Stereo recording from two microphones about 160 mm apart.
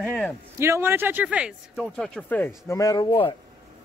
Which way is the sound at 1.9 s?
5° left (ahead or behind).